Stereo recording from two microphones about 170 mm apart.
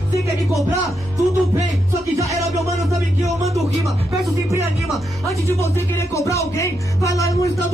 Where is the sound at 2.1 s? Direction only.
20° right (ahead or behind).